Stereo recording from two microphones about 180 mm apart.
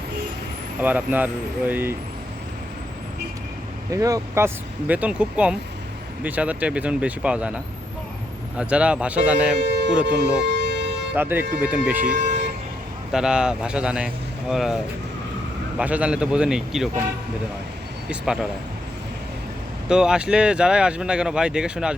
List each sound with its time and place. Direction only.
0.8 s speech: 10° right (ahead or behind)
3.9 s speech: 20° right (ahead or behind)
9.6 s speech: 70° right (ahead or behind)
10.2 s music: 70° right (ahead or behind)
11.1 s speech: 10° right (ahead or behind)
15.8 s speech: 5° right (ahead or behind)
18.1 s speech: 5° right (ahead or behind)
19.9 s speech: 5° right (ahead or behind)